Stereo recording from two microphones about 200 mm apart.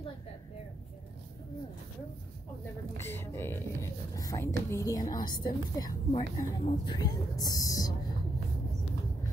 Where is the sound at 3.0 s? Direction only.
15° left (ahead or behind).